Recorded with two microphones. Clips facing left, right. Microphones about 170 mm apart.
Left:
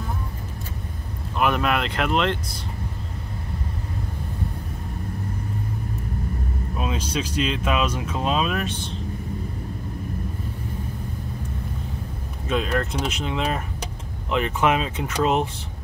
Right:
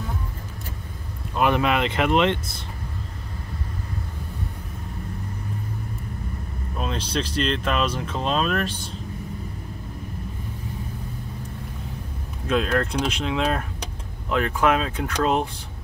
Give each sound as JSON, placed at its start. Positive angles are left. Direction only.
{"t": 1.6, "sound": "speech", "side_deg": 0}
{"t": 6.8, "sound": "speech", "side_deg": 5}
{"t": 12.4, "sound": "speech", "side_deg": 0}